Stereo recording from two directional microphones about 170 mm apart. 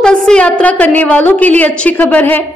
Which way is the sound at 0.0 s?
5° left (ahead or behind).